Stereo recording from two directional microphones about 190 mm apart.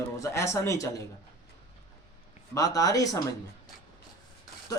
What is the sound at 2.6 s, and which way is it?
Speech, 20° left (ahead or behind).